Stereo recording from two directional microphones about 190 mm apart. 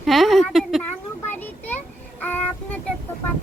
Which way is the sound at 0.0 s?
Centre (ahead or behind).